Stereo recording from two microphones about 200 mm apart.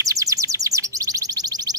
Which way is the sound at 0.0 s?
15° right (ahead or behind).